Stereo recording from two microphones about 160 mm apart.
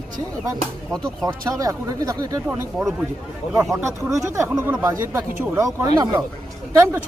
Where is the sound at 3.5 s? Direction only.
15° right (ahead or behind).